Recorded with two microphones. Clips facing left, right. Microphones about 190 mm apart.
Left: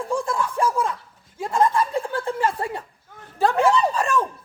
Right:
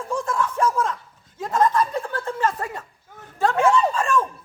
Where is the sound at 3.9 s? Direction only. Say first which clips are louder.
Even; 35° left (ahead or behind).